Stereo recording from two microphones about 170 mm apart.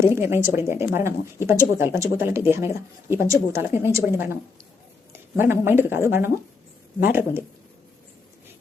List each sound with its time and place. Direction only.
0.0 s speech: 15° right (ahead or behind)
5.1 s speech: 15° right (ahead or behind)